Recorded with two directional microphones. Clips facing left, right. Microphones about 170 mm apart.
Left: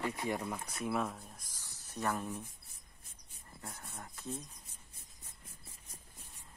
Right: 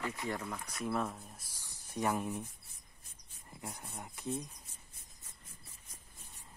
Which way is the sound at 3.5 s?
15° right (ahead or behind).